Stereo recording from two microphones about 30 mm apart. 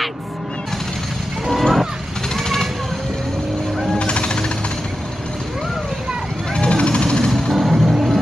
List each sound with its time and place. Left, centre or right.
1.5 s children playing: centre
2.3 s vehicle: centre
4.0 s jackhammer: left
6.5 s vehicle: left
7.2 s music: centre
7.5 s music: centre